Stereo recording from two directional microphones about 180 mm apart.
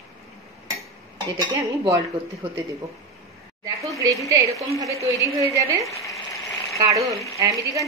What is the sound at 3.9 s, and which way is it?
Speech, 20° right (ahead or behind).